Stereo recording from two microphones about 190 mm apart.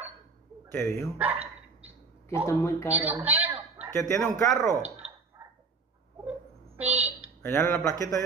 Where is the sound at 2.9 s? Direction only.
10° right (ahead or behind).